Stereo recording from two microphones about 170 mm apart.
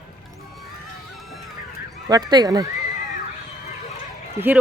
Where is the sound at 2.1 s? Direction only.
25° right (ahead or behind).